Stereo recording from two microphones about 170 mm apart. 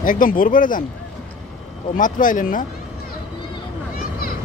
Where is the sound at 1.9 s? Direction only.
50° left (ahead or behind).